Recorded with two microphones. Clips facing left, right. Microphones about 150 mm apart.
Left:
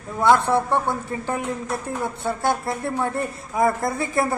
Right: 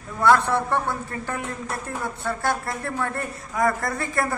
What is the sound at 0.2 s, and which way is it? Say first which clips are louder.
Speech: left 1 dB; 20° left (ahead or behind).